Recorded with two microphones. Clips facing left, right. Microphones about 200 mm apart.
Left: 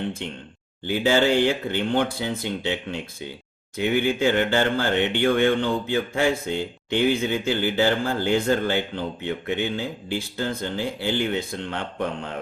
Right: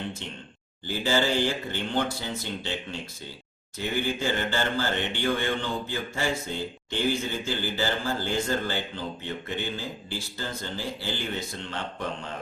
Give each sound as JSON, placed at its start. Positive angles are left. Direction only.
{"t": 0.9, "sound": "speech", "side_deg": 60}